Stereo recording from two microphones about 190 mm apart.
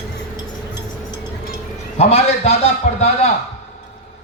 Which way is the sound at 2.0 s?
35° left (ahead or behind).